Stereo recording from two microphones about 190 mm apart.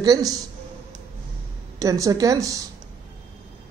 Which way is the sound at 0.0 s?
20° right (ahead or behind).